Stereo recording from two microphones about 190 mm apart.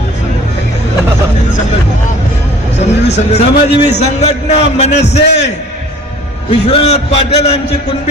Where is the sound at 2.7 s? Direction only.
35° left (ahead or behind).